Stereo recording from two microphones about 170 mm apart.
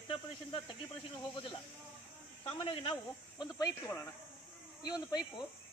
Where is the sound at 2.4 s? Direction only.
30° left (ahead or behind).